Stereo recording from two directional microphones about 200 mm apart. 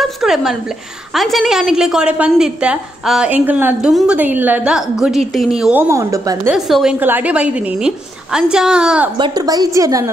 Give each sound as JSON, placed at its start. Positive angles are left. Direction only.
{"t": 0.0, "sound": "a woman's voice", "side_deg": 0}
{"t": 6.5, "sound": "a woman's voice", "side_deg": 0}
{"t": 9.2, "sound": "a woman's voice", "side_deg": -20}